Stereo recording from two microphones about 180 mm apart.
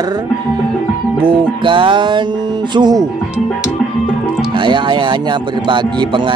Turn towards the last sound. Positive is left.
turn(degrees=-25)  # may be behind; listen again after turning